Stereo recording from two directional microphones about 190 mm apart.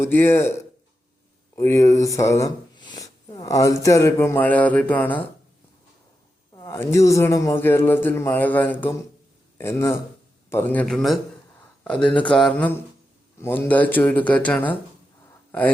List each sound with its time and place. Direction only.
0.0 s speech: 10° left (ahead or behind)
1.5 s speech: 15° left (ahead or behind)
6.6 s speech: 15° left (ahead or behind)